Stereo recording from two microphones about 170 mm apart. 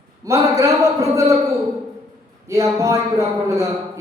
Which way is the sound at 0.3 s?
20° right (ahead or behind).